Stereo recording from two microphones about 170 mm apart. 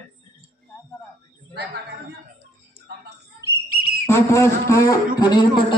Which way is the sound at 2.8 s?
75° right (ahead or behind).